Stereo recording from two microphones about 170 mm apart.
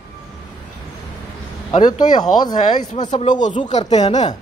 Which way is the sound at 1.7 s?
25° left (ahead or behind).